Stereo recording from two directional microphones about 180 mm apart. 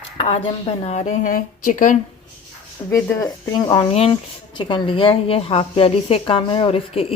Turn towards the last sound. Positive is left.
turn(degrees=30)  # may be behind; listen again after turning